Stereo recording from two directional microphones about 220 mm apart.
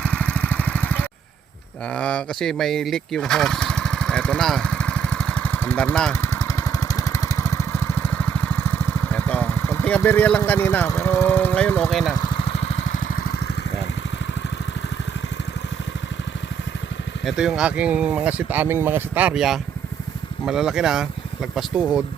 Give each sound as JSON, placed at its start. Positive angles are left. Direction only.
{"t": 0.0, "sound": "vehicle", "side_deg": 5}
{"t": 12.1, "sound": "vehicle", "side_deg": 20}
{"t": 17.2, "sound": "speech", "side_deg": 0}